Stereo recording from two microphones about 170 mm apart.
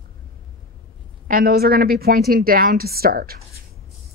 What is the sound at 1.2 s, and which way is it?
Speech, 60° right (ahead or behind).